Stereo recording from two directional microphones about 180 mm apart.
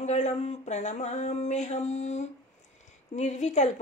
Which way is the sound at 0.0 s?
40° left (ahead or behind).